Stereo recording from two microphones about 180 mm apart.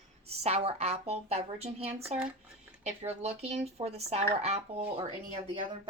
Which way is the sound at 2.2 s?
5° right (ahead or behind).